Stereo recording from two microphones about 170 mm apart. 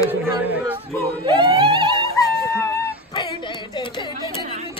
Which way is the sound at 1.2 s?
30° right (ahead or behind).